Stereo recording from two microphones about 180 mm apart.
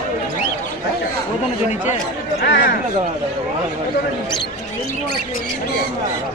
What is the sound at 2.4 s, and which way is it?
Speech, 60° left (ahead or behind).